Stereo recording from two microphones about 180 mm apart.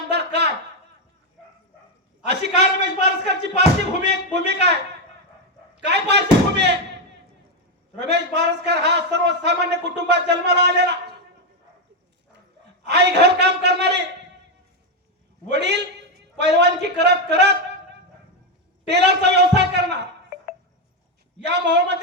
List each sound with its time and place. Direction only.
0.1 s a sound: 70° right (ahead or behind)
2.2 s a sound: 70° right (ahead or behind)
4.0 s a man's voice: 70° right (ahead or behind)
5.8 s speech: 70° right (ahead or behind)
8.0 s a man's voice: 70° right (ahead or behind)
12.9 s a man's voice: 70° right (ahead or behind)
15.5 s a man's voice: 70° right (ahead or behind)
18.9 s a man's voice: 70° right (ahead or behind)
21.4 s a man's voice: 70° right (ahead or behind)